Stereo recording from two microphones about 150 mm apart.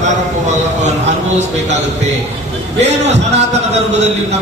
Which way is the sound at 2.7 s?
45° right (ahead or behind).